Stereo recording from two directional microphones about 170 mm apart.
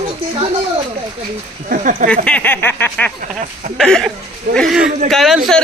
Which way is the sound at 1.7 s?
50° right (ahead or behind).